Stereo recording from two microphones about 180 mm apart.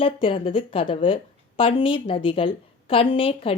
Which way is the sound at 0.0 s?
30° left (ahead or behind).